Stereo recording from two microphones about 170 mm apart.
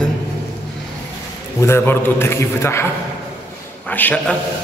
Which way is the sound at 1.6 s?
15° left (ahead or behind).